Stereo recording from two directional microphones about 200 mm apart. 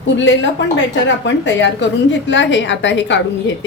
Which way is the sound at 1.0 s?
65° left (ahead or behind).